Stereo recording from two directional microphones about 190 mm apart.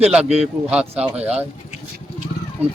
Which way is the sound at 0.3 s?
5° right (ahead or behind).